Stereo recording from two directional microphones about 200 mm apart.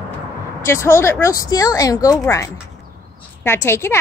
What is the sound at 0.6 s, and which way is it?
Speech, 15° left (ahead or behind).